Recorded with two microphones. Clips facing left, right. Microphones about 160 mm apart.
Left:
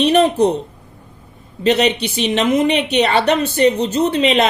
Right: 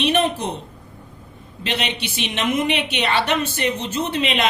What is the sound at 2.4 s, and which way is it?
A woman's voice, 35° left (ahead or behind).